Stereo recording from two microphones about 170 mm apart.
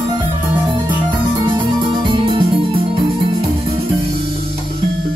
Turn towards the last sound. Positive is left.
turn(degrees=-30)  # may be behind; listen again after turning